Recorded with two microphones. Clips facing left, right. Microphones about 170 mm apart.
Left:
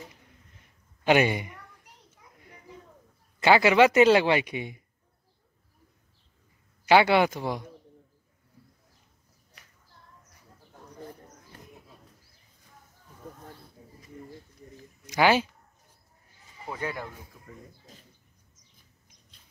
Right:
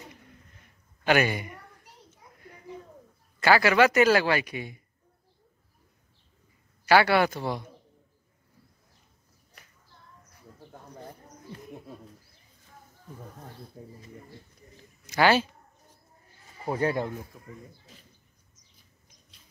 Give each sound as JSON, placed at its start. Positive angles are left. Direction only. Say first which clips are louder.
{"t": 1.0, "sound": "a man's voice", "louder": "left 2 dB", "side_deg": 20}
{"t": 3.3, "sound": "a man's voice", "louder": "left 2 dB", "side_deg": 20}
{"t": 6.9, "sound": "a man's voice", "louder": "left 1 dB", "side_deg": 20}
{"t": 13.8, "sound": "bird", "louder": "right 8 dB", "side_deg": -45}
{"t": 15.0, "sound": "speech", "louder": "even", "side_deg": 15}
{"t": 16.6, "sound": "speech", "louder": "right 7 dB", "side_deg": -35}
{"t": 17.3, "sound": "a sound", "louder": "right 3 dB", "side_deg": -35}